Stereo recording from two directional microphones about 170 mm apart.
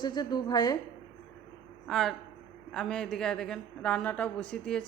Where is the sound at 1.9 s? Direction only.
Centre (ahead or behind).